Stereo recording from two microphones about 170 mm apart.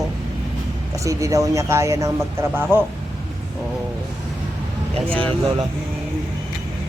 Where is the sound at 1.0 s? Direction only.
20° right (ahead or behind).